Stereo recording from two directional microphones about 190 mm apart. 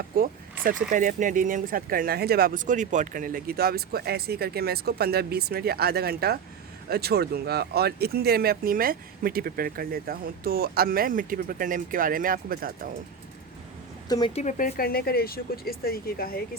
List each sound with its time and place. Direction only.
0.1 s speech: 50° right (ahead or behind)
14.3 s speech: 45° left (ahead or behind)